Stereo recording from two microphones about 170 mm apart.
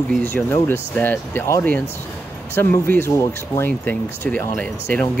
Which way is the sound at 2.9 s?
15° left (ahead or behind).